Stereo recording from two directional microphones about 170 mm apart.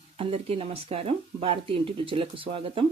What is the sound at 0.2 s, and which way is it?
Speech, 35° right (ahead or behind).